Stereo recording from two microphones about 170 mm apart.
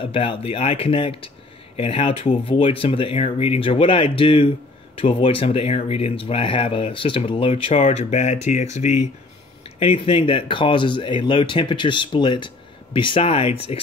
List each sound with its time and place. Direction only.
0.0 s speech: 30° left (ahead or behind)
9.8 s speech: 35° left (ahead or behind)